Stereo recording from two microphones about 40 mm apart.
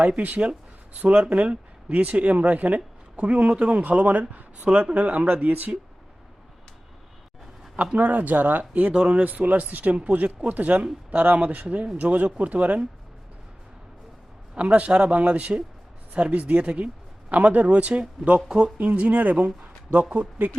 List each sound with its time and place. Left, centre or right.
1.0 s speech: right
3.2 s speech: right
4.6 s speech: right
5.3 s speech: right
7.9 s speech: right
8.9 s speech: right
9.2 s speech: right
10.0 s speech: right
14.5 s speech: right
18.4 s speech: right
18.8 s speech: right